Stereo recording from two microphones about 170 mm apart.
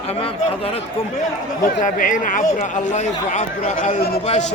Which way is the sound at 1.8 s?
50° left (ahead or behind).